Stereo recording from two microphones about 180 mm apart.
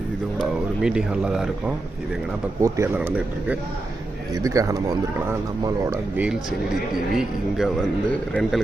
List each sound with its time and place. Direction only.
0.3 s speech: 5° right (ahead or behind)
2.6 s speech: 15° right (ahead or behind)
4.4 s speech: 20° right (ahead or behind)
7.2 s speech: centre (ahead or behind)